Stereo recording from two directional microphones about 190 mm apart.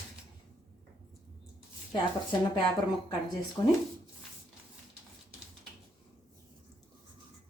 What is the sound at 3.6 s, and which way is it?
Speech, 20° left (ahead or behind).